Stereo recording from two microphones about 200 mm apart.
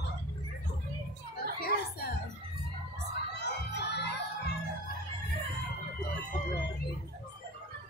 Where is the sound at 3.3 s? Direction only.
60° left (ahead or behind).